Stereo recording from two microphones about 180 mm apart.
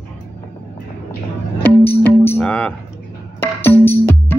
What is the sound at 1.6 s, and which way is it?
Music, 10° left (ahead or behind).